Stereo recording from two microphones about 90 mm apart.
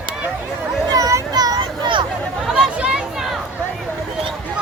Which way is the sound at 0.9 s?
40° right (ahead or behind).